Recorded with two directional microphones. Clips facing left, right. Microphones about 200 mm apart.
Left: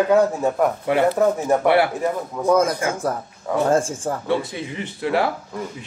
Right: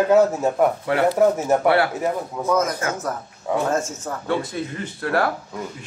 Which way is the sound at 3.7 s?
30° left (ahead or behind).